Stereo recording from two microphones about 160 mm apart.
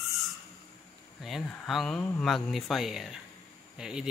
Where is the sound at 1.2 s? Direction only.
Centre (ahead or behind).